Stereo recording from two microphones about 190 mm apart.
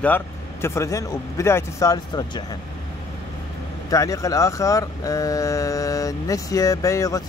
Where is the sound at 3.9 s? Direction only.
15° left (ahead or behind).